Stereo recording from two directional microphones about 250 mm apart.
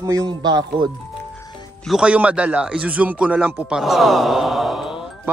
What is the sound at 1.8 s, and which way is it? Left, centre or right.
A man's voice, centre.